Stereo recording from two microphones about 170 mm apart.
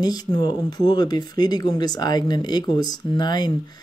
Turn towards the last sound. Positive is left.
turn(degrees=25)  # may be behind; listen again after turning